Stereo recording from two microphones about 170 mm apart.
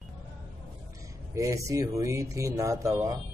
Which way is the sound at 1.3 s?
20° right (ahead or behind).